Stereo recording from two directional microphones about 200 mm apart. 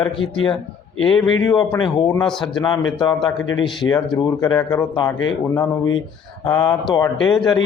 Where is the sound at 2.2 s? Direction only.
5° left (ahead or behind).